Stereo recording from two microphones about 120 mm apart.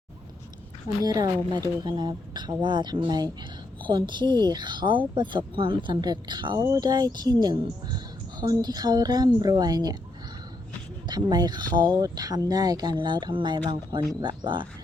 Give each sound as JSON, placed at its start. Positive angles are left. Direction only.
{"t": 1.0, "sound": "speech", "side_deg": -35}
{"t": 11.1, "sound": "speech", "side_deg": -35}